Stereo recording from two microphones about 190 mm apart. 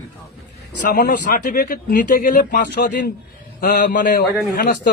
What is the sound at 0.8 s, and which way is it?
A man's voice, 45° left (ahead or behind).